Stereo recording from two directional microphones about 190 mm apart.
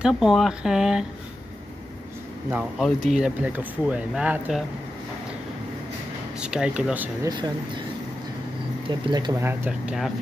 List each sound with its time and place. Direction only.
0.0 s speech: centre (ahead or behind)
2.8 s speech: centre (ahead or behind)
6.4 s speech: 5° right (ahead or behind)
7.2 s speech: 20° right (ahead or behind)
8.8 s speech: 20° right (ahead or behind)
9.5 s speech: 10° right (ahead or behind)